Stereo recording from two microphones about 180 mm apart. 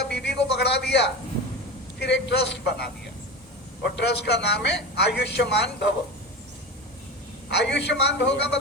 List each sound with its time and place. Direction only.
0.0 s a sound: 65° left (ahead or behind)
2.0 s a man's voice: 70° left (ahead or behind)
7.5 s a man's voice: 70° left (ahead or behind)